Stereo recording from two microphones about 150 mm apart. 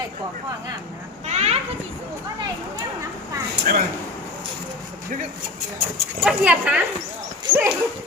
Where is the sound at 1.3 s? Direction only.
45° right (ahead or behind).